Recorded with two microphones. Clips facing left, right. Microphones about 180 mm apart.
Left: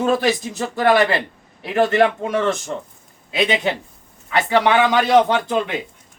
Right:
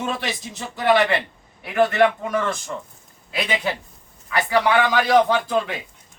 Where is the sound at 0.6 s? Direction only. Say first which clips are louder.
Left 2 dB; 50° left (ahead or behind).